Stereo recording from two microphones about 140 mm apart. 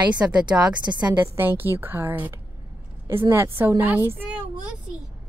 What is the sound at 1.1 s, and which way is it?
A woman's voice, 15° right (ahead or behind).